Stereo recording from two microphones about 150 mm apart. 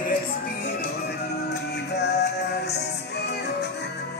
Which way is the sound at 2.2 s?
90° left.